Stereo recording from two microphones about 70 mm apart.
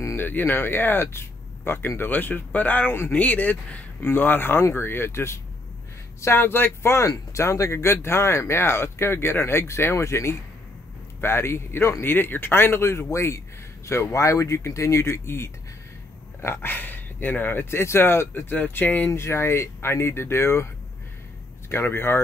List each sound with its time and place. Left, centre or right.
0.1 s speech: left
7.1 s speech: left
21.6 s speech: left